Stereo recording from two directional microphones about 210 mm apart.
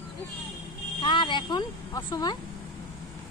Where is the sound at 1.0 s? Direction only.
20° left (ahead or behind).